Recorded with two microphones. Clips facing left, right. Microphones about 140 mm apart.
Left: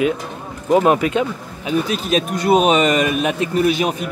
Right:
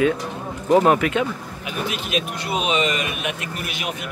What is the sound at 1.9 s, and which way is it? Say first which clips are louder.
A man's voice: left 6 dB; 35° left (ahead or behind).